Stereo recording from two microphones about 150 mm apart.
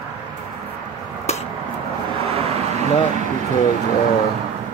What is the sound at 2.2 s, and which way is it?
Vehicle, 45° right (ahead or behind).